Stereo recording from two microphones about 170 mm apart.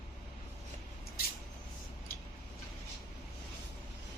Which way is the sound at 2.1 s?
60° left (ahead or behind).